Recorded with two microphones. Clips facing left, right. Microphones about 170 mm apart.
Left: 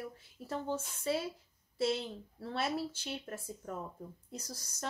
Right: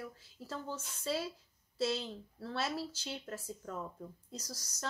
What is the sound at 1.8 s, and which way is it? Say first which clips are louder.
Speech: left 2 dB; 20° left (ahead or behind).